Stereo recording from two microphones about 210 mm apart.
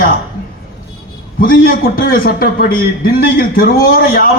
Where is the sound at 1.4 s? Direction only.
45° left (ahead or behind).